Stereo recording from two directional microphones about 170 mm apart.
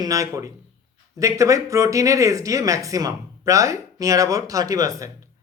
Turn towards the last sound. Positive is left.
turn(degrees=-20)  # may be behind; listen again after turning